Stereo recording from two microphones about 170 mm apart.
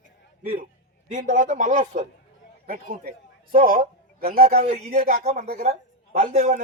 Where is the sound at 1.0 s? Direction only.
45° right (ahead or behind).